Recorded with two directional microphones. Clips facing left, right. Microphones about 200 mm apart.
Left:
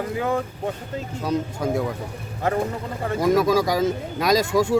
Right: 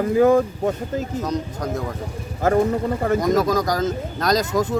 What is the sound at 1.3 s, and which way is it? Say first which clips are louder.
Speech: left 2 dB; 5° left (ahead or behind).